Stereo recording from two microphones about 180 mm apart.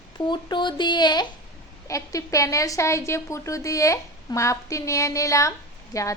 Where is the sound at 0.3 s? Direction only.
25° left (ahead or behind).